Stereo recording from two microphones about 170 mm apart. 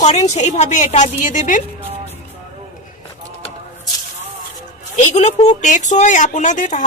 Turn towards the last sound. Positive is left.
turn(degrees=45)  # may be behind; listen again after turning